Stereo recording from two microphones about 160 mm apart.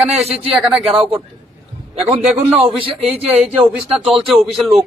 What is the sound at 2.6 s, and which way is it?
A man's voice, 35° right (ahead or behind).